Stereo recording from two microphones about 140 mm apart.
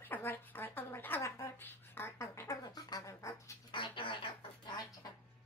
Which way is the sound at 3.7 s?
35° left (ahead or behind).